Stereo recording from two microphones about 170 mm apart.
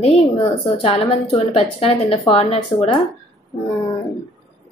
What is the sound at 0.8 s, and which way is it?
A woman's voice, 35° left (ahead or behind).